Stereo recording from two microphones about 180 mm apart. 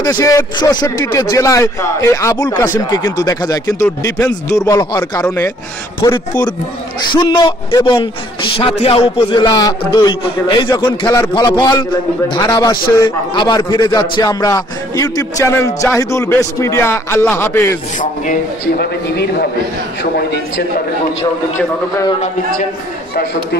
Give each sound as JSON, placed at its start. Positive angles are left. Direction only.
{"t": 0.0, "sound": "a man's voice", "side_deg": 20}
{"t": 17.9, "sound": "a man's voice", "side_deg": 45}
{"t": 20.0, "sound": "a man's voice", "side_deg": 70}